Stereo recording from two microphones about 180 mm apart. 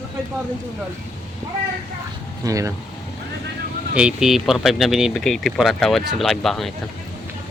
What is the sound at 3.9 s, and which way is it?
Speech, 5° right (ahead or behind).